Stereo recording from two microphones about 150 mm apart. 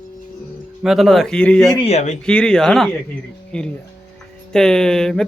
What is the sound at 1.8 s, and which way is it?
Speech, 45° left (ahead or behind).